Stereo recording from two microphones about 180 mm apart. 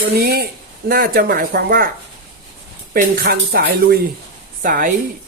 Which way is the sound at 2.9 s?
55° right (ahead or behind).